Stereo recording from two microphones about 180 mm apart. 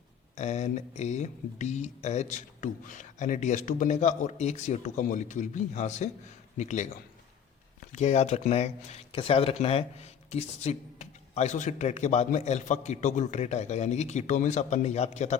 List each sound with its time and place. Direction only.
0.3 s speech: 40° left (ahead or behind)
7.9 s speech: 40° left (ahead or behind)